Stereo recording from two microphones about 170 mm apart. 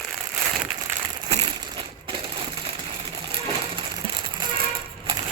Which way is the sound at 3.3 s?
30° right (ahead or behind).